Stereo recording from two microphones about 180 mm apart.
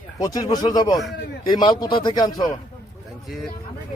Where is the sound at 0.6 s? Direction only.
20° left (ahead or behind).